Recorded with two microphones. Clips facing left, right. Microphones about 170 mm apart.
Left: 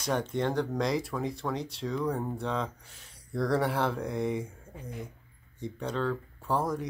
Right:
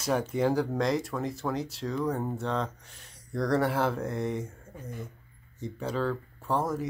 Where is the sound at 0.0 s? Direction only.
5° right (ahead or behind).